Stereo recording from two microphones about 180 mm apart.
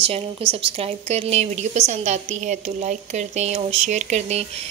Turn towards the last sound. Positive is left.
turn(degrees=-40)  # may be behind; listen again after turning